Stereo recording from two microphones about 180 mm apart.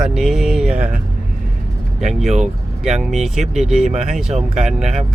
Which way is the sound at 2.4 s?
Centre (ahead or behind).